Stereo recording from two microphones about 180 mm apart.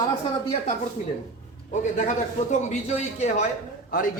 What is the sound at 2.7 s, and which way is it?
Speech, 40° left (ahead or behind).